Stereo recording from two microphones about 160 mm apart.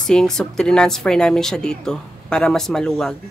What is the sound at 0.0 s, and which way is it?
A woman's voice, 5° left (ahead or behind).